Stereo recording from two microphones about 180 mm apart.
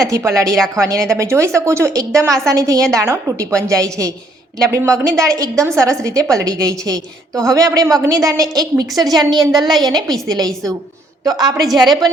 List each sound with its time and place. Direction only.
0.0 s a woman's voice: 15° right (ahead or behind)